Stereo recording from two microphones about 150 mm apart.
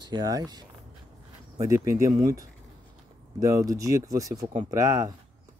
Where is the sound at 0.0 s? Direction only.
30° right (ahead or behind).